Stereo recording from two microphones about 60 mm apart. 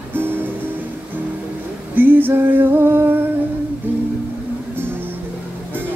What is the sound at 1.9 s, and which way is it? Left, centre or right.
Female singing, right.